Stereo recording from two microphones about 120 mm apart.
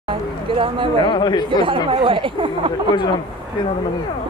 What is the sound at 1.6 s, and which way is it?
Speech, 45° right (ahead or behind).